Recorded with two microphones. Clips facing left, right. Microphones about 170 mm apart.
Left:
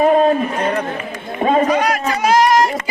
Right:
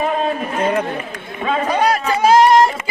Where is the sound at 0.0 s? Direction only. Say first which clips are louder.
Left 7 dB; 40° left (ahead or behind).